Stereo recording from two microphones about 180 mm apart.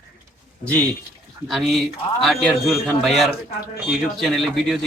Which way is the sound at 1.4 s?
Centre (ahead or behind).